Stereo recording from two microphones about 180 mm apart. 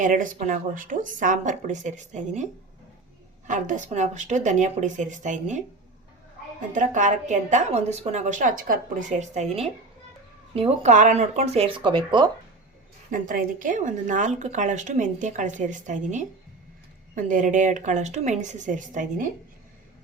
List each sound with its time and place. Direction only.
0.0 s a woman's voice: 45° right (ahead or behind)
6.7 s a woman's voice: 45° right (ahead or behind); by 12.3 s 25° right (ahead or behind)
13.1 s a woman's voice: 50° right (ahead or behind)